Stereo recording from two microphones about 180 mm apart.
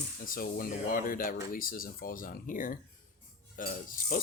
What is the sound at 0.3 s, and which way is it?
Speech, 55° left (ahead or behind).